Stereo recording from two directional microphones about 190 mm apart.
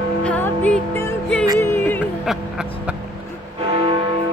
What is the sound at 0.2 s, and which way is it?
Music, 10° left (ahead or behind).